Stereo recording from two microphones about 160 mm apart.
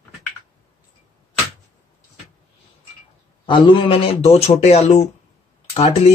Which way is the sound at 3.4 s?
30° left (ahead or behind).